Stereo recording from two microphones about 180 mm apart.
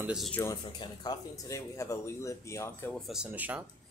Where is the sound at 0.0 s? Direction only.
5° right (ahead or behind).